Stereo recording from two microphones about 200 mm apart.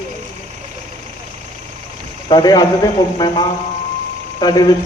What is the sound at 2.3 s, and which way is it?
A man's voice, 20° left (ahead or behind).